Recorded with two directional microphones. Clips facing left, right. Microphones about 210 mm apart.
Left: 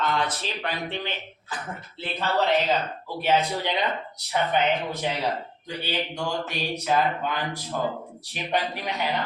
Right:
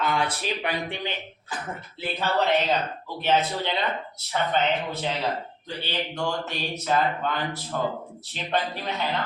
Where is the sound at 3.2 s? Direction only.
10° left (ahead or behind).